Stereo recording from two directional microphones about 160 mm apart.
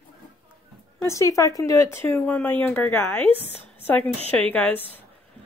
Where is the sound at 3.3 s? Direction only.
40° left (ahead or behind).